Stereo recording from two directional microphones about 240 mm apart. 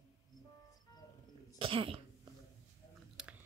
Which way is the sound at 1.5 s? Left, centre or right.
Right.